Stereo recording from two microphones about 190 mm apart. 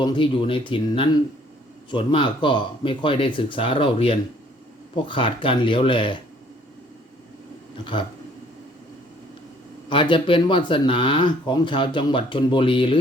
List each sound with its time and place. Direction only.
0.0 s speech: 25° left (ahead or behind)
9.9 s speech: 25° left (ahead or behind)